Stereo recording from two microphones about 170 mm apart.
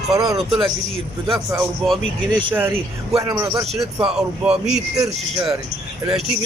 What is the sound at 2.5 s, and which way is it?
Speech, 15° right (ahead or behind).